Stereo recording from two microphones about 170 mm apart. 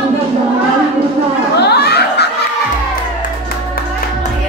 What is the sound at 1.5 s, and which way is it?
Chuckle, 75° left (ahead or behind).